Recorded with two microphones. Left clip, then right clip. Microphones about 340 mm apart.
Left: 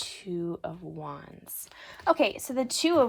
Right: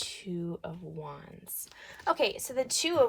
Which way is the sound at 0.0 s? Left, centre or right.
Left.